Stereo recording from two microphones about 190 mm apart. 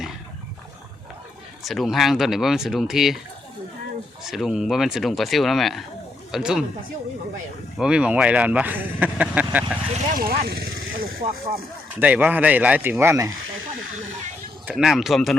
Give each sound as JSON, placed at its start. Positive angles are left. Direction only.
{"t": 1.6, "sound": "speech", "side_deg": 0}
{"t": 4.2, "sound": "speech", "side_deg": 0}
{"t": 7.8, "sound": "speech", "side_deg": -5}
{"t": 10.2, "sound": "vehicle", "side_deg": -55}
{"t": 11.9, "sound": "speech", "side_deg": -10}
{"t": 14.7, "sound": "speech", "side_deg": 0}